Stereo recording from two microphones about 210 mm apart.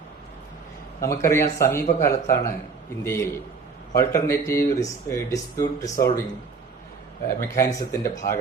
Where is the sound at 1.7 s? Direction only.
45° left (ahead or behind).